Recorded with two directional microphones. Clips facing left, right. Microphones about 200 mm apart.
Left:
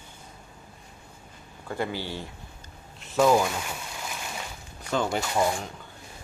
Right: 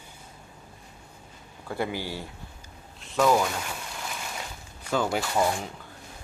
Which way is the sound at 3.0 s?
5° left (ahead or behind).